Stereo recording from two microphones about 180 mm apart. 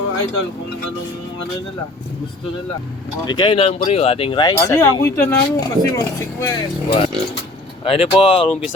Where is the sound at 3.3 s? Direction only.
25° left (ahead or behind).